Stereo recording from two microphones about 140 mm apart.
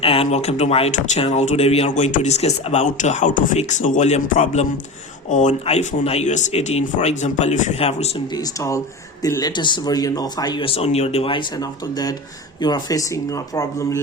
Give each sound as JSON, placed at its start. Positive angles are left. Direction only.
{"t": 0.0, "sound": "speech", "side_deg": 40}
{"t": 8.3, "sound": "speech", "side_deg": 25}